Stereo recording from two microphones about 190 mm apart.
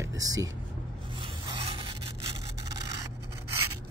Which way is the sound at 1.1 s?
25° right (ahead or behind).